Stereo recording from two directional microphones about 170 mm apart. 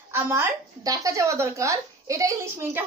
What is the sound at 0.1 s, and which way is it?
A woman's voice, 15° right (ahead or behind).